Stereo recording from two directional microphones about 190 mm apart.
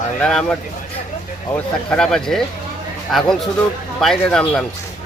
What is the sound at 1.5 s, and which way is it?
Speech, 5° left (ahead or behind).